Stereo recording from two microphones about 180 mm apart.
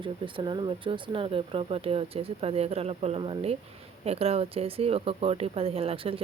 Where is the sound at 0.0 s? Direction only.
25° right (ahead or behind).